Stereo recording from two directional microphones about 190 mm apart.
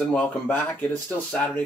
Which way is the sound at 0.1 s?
10° left (ahead or behind).